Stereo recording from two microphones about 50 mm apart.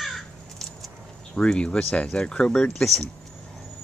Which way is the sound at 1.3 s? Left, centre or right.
Left.